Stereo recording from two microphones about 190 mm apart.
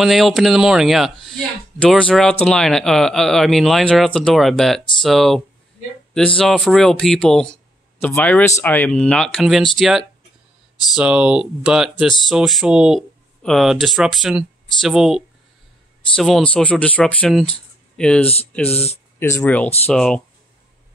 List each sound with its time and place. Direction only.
0.0 s speech: centre (ahead or behind)
18.2 s speech: 30° left (ahead or behind)
18.5 s speech: 10° left (ahead or behind)